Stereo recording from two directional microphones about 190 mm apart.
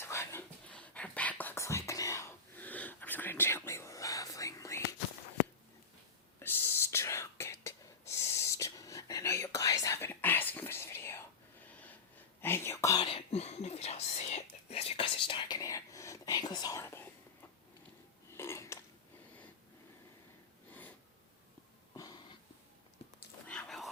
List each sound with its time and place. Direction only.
0.0 s whispering: 15° left (ahead or behind)
6.4 s whispering: 10° left (ahead or behind)
12.4 s whispering: 10° left (ahead or behind)
13.1 s whispering: 35° left (ahead or behind); by 17.1 s 15° left (ahead or behind)
18.3 s a sound: 15° left (ahead or behind)
21.9 s a sound: 20° left (ahead or behind)
23.5 s dog: 5° left (ahead or behind)